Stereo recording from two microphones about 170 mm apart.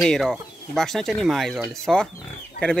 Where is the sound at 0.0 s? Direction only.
Centre (ahead or behind).